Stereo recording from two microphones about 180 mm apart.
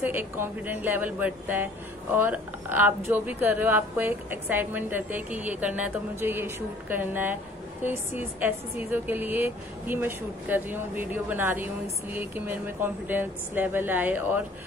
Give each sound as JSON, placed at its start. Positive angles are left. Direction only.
{"t": 0.0, "sound": "a woman's voice", "side_deg": -10}